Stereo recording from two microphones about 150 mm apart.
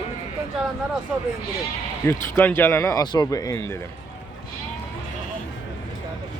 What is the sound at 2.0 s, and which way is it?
Speech, 15° left (ahead or behind).